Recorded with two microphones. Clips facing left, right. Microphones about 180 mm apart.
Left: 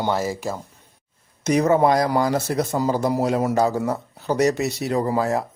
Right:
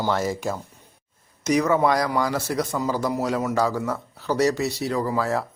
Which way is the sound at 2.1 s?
40° left (ahead or behind).